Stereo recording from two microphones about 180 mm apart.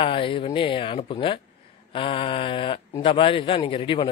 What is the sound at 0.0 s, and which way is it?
A man's voice, 30° left (ahead or behind).